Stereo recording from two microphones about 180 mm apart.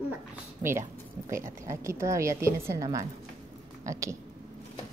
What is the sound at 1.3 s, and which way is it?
A child's voice, 15° right (ahead or behind).